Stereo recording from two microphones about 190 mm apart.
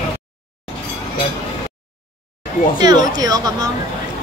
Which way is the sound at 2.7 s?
20° right (ahead or behind).